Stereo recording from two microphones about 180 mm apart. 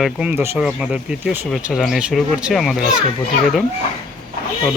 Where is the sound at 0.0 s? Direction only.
5° right (ahead or behind).